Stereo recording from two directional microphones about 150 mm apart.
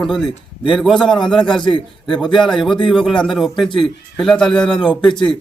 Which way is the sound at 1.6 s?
30° left (ahead or behind).